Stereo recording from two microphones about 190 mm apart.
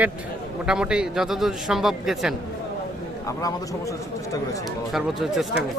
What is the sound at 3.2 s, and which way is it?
Speech, 20° left (ahead or behind).